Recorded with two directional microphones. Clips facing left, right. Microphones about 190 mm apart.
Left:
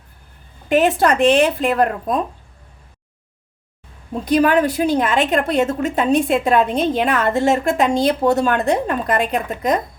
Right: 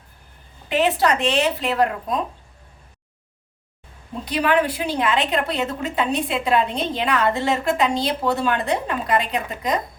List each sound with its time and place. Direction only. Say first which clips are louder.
0.7 s a woman's voice: left 4 dB; 50° left (ahead or behind)
4.3 s a woman's voice: left 5 dB; 45° left (ahead or behind)